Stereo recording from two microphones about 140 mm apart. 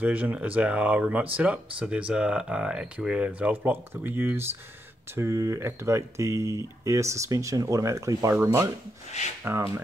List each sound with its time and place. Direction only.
0.0 s speech: 10° right (ahead or behind)